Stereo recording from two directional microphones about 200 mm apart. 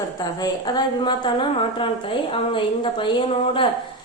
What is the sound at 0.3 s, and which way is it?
A woman's voice, 20° left (ahead or behind).